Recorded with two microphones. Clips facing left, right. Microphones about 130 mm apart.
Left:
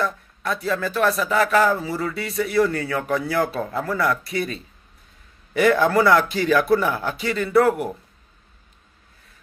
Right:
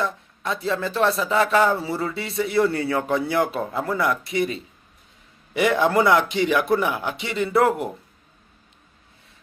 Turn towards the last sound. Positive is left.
turn(degrees=-25)  # may be behind; listen again after turning